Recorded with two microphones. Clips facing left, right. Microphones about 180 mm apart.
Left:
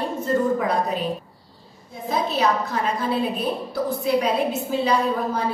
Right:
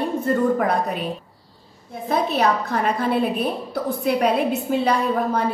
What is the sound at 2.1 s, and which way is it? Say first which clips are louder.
A woman's voice: right 2 dB; 60° right (ahead or behind).